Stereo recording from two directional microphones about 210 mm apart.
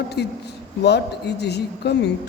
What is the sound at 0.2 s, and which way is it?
A man's voice, 50° left (ahead or behind).